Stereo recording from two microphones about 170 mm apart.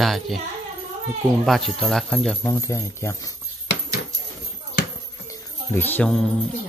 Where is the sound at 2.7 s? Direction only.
15° left (ahead or behind).